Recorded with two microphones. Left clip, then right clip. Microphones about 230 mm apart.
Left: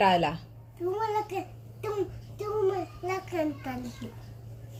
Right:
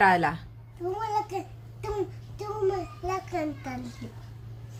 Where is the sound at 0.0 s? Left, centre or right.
Right.